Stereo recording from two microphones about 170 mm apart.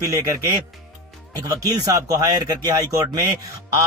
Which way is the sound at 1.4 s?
20° right (ahead or behind).